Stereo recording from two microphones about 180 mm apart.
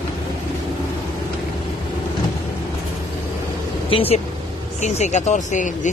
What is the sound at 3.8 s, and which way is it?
Speech, 30° left (ahead or behind).